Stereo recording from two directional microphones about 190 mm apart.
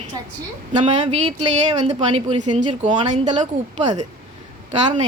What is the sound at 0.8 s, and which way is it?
Speech, 35° right (ahead or behind).